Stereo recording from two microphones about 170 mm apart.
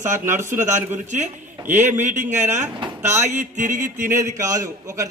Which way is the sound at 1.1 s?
45° right (ahead or behind).